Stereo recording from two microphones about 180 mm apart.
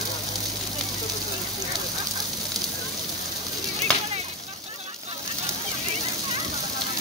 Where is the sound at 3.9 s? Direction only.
5° left (ahead or behind).